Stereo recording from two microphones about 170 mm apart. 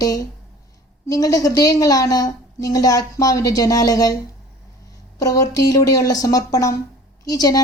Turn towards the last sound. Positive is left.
turn(degrees=20)  # may be behind; listen again after turning